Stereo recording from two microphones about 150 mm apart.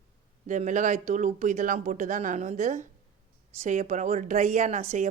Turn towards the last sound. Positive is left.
turn(degrees=-55)  # may be behind; listen again after turning